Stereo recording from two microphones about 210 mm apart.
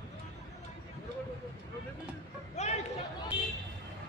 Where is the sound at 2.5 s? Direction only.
30° left (ahead or behind).